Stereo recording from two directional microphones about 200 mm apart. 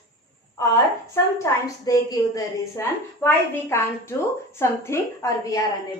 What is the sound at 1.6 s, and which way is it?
A woman's voice, 20° left (ahead or behind).